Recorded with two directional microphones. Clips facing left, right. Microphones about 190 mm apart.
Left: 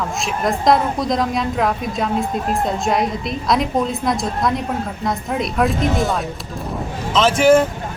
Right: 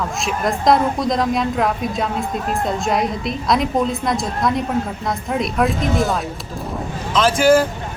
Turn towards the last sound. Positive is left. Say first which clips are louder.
# left 1 dB
turn(degrees=25)  # may be behind; listen again after turning